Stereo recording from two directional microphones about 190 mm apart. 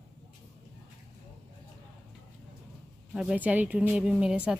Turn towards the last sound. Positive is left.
turn(degrees=-5)  # may be behind; listen again after turning